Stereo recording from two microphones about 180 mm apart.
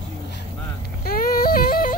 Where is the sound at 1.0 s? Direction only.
55° left (ahead or behind).